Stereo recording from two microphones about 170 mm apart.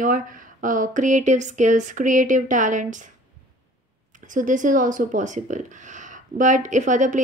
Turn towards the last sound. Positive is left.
turn(degrees=-45)  # may be behind; listen again after turning